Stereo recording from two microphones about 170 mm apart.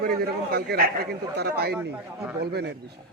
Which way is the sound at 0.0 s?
65° right (ahead or behind).